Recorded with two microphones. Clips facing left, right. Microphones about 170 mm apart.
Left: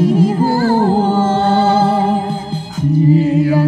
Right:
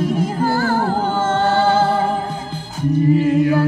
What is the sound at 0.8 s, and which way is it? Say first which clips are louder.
Music: left 6 dB; 25° left (ahead or behind).